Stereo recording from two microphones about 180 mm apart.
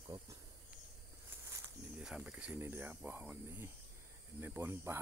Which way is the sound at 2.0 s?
5° right (ahead or behind).